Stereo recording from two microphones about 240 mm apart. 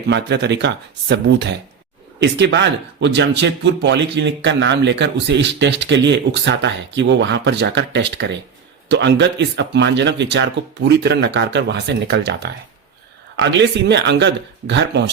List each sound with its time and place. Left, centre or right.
0.1 s speech: right